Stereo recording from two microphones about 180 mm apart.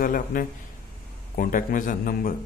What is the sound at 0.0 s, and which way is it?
Speech, 50° left (ahead or behind).